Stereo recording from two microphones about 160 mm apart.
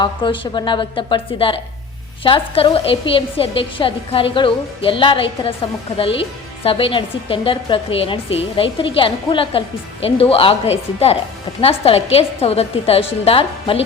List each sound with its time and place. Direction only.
0.0 s a woman's voice: 30° left (ahead or behind)